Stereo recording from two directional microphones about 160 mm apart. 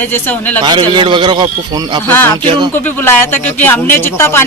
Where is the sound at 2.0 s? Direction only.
10° left (ahead or behind).